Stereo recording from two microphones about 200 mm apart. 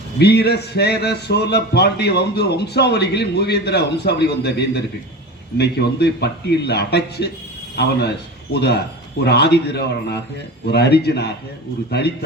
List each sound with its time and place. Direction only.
0.2 s a man's voice: 55° left (ahead or behind)
8.5 s a man's voice: 55° left (ahead or behind)